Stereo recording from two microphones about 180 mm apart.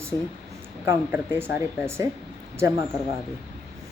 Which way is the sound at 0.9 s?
10° right (ahead or behind).